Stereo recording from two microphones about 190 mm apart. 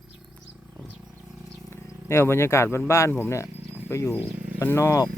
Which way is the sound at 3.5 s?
10° right (ahead or behind).